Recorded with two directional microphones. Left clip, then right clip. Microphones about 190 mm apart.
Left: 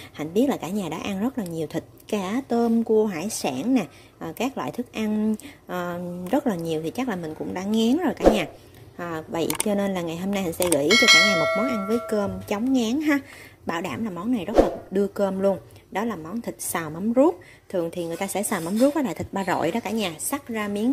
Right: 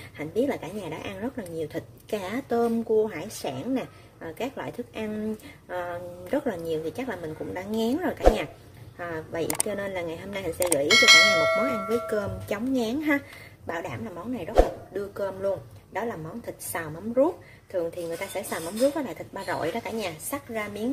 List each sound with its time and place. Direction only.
0.2 s a woman's voice: 30° left (ahead or behind)
10.9 s speech: centre (ahead or behind)
12.1 s speech: 25° left (ahead or behind)
13.7 s a woman's voice: 45° left (ahead or behind)